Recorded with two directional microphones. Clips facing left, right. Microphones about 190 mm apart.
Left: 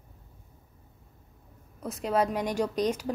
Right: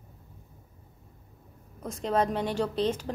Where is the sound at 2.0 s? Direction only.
10° left (ahead or behind).